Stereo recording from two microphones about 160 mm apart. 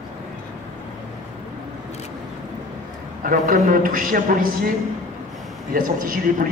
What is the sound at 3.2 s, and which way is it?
A man's voice, 60° right (ahead or behind).